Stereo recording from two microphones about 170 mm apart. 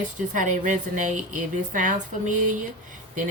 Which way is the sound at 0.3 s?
50° right (ahead or behind).